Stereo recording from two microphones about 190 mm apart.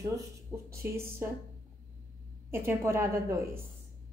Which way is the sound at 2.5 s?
10° right (ahead or behind).